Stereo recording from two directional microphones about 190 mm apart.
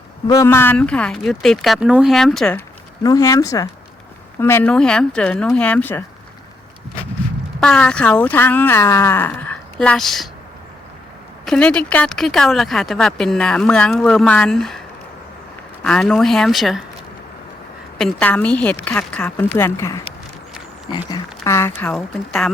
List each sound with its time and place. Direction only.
0.3 s speech: 15° left (ahead or behind)
3.0 s speech: 20° left (ahead or behind)
7.6 s speech: 5° left (ahead or behind)
11.4 s speech: 5° left (ahead or behind)
15.8 s speech: 5° left (ahead or behind)
17.9 s speech: 5° left (ahead or behind)
21.1 s a sound: 15° left (ahead or behind)
21.8 s speech: 5° left (ahead or behind)